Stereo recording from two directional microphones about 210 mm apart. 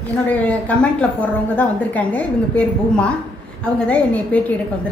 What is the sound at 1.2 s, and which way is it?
A woman's voice, 5° left (ahead or behind).